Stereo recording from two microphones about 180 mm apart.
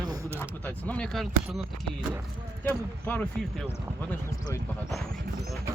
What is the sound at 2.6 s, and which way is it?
Speech, 10° left (ahead or behind).